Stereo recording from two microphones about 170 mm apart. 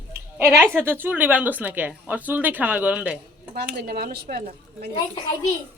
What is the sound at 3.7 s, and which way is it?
Speech, 65° right (ahead or behind).